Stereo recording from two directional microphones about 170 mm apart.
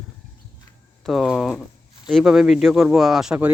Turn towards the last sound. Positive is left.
turn(degrees=-5)  # may be behind; listen again after turning